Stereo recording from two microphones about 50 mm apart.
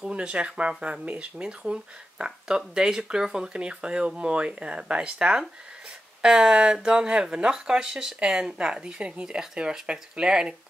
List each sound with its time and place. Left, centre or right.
0.1 s speech: right